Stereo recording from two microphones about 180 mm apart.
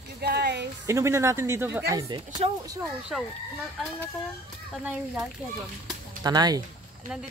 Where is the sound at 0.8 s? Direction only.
15° right (ahead or behind).